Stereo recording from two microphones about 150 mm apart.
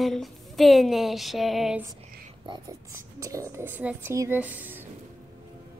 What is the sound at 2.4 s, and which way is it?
Speech, 30° right (ahead or behind).